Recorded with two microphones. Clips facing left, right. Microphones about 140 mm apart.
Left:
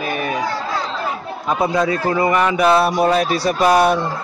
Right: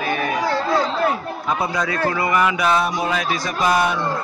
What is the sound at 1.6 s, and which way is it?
A man's voice, 25° left (ahead or behind).